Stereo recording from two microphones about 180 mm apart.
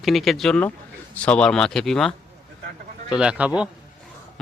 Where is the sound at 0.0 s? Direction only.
Centre (ahead or behind).